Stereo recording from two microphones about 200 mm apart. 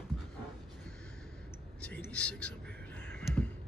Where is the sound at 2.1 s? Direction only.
5° left (ahead or behind).